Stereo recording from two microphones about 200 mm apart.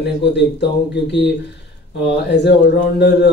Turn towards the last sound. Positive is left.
turn(degrees=60)  # may be behind; listen again after turning